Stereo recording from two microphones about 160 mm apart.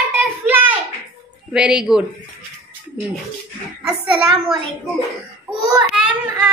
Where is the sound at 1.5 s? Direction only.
5° right (ahead or behind).